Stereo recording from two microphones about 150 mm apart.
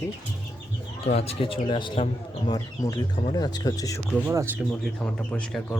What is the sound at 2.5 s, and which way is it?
Speech, 20° left (ahead or behind).